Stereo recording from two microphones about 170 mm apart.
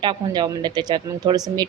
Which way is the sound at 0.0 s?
25° right (ahead or behind).